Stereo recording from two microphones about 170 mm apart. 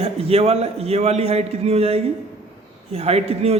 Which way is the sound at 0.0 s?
35° right (ahead or behind).